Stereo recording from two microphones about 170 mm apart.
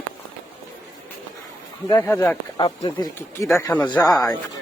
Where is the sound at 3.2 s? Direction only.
15° left (ahead or behind).